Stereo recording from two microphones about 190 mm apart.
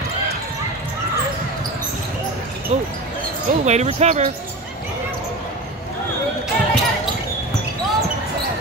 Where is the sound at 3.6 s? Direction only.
35° right (ahead or behind).